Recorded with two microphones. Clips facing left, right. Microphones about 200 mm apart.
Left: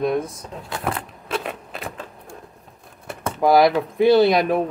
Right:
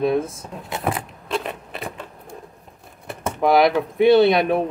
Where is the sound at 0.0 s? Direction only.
5° right (ahead or behind).